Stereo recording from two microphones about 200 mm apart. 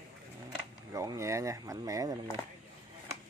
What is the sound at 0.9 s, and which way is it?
Speech, 15° right (ahead or behind).